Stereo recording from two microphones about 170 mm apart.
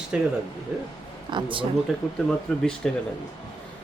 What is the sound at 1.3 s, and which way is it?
Speech, 30° right (ahead or behind).